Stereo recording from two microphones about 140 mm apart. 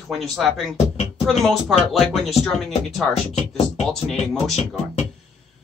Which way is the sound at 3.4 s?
50° left (ahead or behind).